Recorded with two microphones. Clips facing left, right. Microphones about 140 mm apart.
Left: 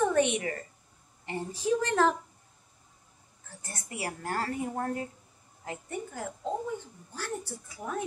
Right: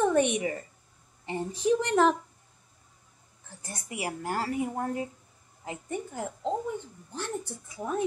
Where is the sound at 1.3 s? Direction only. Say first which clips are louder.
Right 3 dB; 20° right (ahead or behind).